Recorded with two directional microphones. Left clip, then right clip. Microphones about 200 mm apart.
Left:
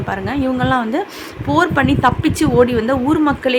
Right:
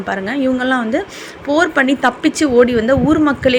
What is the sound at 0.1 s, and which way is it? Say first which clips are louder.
A woman's voice: right 2 dB; 5° right (ahead or behind).